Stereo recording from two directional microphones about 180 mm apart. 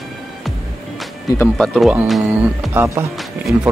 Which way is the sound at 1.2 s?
15° left (ahead or behind).